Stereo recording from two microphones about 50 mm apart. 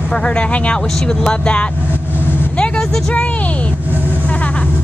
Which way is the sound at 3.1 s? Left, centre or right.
Left.